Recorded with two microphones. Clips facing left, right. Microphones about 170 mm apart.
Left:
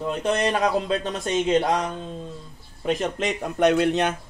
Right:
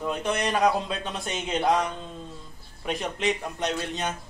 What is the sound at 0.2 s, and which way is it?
Speech, 35° left (ahead or behind).